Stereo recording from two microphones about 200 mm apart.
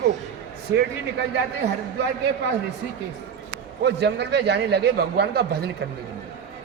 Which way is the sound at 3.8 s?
55° right (ahead or behind).